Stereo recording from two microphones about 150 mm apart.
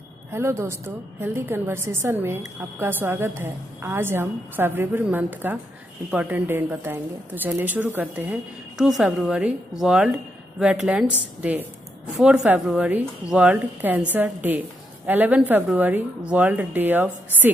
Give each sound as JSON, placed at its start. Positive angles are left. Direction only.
{"t": 0.3, "sound": "a woman's voice", "side_deg": -15}
{"t": 8.7, "sound": "a woman's voice", "side_deg": 0}